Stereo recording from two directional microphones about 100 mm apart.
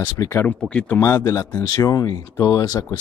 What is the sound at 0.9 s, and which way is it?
Speech, 30° left (ahead or behind).